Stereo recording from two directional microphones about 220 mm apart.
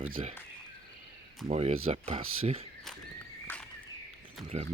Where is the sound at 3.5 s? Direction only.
10° left (ahead or behind).